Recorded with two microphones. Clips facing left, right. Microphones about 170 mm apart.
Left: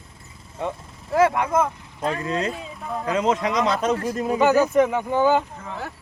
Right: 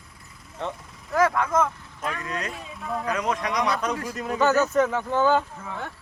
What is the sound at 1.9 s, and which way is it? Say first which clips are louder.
Speech: left 8 dB; 30° left (ahead or behind).